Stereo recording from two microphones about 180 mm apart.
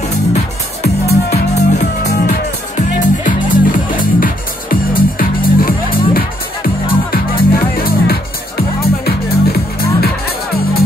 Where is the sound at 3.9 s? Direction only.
50° left (ahead or behind).